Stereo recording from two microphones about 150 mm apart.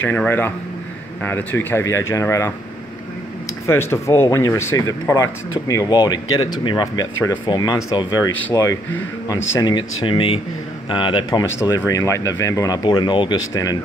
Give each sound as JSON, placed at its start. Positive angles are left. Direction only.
{"t": 0.0, "sound": "speech", "side_deg": 10}
{"t": 3.6, "sound": "a man's voice", "side_deg": 15}
{"t": 11.8, "sound": "speech", "side_deg": 20}